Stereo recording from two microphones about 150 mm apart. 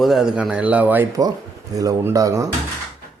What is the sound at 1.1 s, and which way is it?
A man's voice, 25° right (ahead or behind).